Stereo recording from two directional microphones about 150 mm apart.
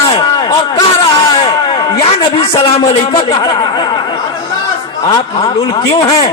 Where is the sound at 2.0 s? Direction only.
35° left (ahead or behind).